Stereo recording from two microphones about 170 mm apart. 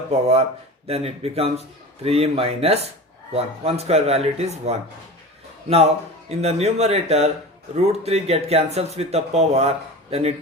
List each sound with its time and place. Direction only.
0.1 s speech: 40° right (ahead or behind)